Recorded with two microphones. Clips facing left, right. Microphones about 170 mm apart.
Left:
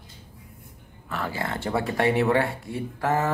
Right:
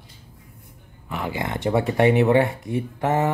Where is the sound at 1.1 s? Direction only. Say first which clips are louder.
Right 2 dB; 15° right (ahead or behind).